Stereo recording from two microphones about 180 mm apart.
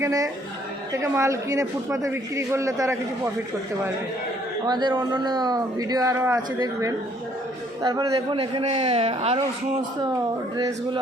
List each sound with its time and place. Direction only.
0.0 s a man's voice: 20° right (ahead or behind)
4.6 s a man's voice: 25° right (ahead or behind)
7.8 s a man's voice: 20° right (ahead or behind)